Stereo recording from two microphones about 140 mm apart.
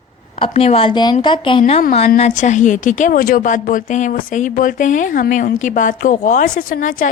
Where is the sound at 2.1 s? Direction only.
55° left (ahead or behind).